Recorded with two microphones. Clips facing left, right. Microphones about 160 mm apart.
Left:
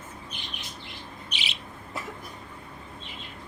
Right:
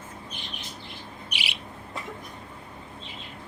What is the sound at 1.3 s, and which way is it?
Bird, 10° right (ahead or behind).